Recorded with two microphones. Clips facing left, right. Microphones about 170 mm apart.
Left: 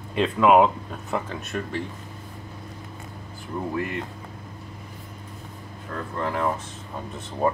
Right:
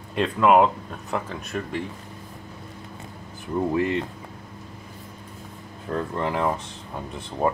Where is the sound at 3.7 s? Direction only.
25° right (ahead or behind).